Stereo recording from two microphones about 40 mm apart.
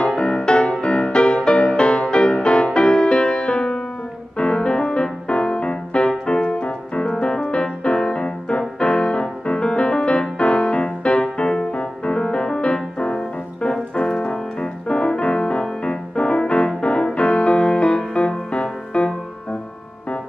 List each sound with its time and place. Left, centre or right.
0.1 s music: left